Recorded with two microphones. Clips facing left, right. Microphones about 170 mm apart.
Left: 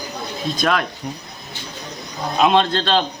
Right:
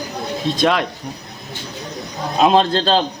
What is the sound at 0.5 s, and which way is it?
Speech, 20° right (ahead or behind).